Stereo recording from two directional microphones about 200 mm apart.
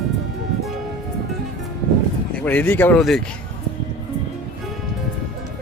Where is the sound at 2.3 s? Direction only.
10° left (ahead or behind).